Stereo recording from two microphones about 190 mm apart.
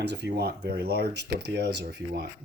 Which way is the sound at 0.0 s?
60° right (ahead or behind).